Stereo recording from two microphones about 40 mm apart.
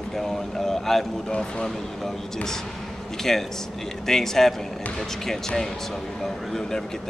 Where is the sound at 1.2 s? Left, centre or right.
Centre.